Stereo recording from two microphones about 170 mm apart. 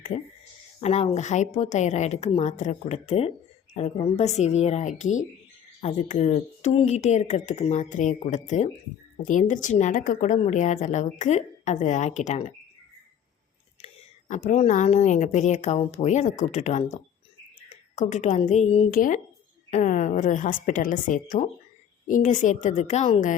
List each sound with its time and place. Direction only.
0.1 s a woman's voice: 45° left (ahead or behind)
13.8 s a woman's voice: 45° left (ahead or behind)
18.9 s a woman's voice: 55° left (ahead or behind)